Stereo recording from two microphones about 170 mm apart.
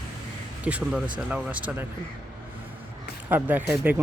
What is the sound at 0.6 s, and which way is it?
Speech, 5° right (ahead or behind).